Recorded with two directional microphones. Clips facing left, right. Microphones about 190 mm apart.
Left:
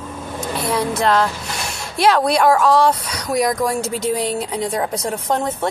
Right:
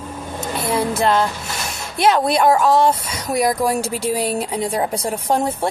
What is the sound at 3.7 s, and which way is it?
Speech, 30° right (ahead or behind).